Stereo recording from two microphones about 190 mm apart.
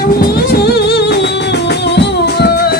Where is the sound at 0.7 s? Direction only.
60° left (ahead or behind).